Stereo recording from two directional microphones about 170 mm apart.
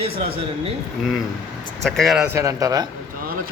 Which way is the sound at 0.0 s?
35° right (ahead or behind).